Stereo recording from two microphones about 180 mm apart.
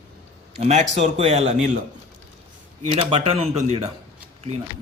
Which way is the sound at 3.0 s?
35° right (ahead or behind).